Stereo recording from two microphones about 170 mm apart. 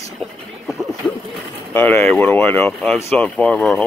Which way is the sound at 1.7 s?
10° left (ahead or behind).